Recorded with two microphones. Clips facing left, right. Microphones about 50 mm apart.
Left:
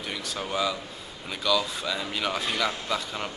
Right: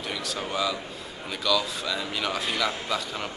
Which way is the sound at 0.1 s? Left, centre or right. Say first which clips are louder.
Even; centre.